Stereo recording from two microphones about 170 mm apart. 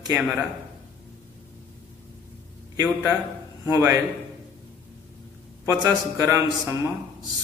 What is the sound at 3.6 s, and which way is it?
Speech, 20° right (ahead or behind).